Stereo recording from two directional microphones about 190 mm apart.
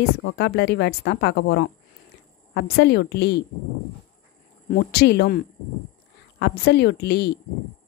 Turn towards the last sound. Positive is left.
turn(degrees=60)  # may be behind; listen again after turning